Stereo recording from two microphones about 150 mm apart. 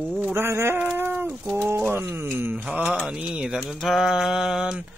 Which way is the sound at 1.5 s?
15° right (ahead or behind).